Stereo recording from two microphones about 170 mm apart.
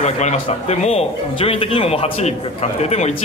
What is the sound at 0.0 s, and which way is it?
Speech, 40° left (ahead or behind).